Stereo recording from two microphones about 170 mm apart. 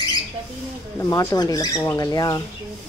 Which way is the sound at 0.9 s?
15° left (ahead or behind).